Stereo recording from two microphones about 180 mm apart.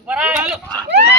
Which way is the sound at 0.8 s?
65° right (ahead or behind).